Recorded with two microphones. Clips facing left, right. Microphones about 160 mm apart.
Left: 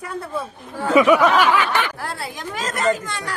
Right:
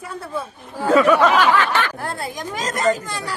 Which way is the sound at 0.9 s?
10° left (ahead or behind).